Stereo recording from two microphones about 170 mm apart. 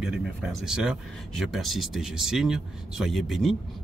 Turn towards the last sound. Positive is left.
turn(degrees=0)  # may be behind; listen again after turning